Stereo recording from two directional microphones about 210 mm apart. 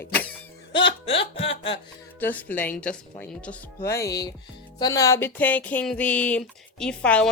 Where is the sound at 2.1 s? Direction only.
10° left (ahead or behind).